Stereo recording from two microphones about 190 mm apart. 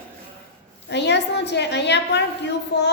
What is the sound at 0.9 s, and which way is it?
A woman's voice, 65° left (ahead or behind).